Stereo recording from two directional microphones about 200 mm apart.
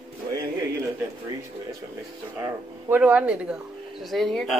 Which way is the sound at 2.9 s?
5° right (ahead or behind).